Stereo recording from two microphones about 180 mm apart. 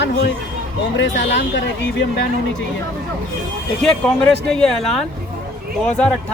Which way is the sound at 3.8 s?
5° left (ahead or behind).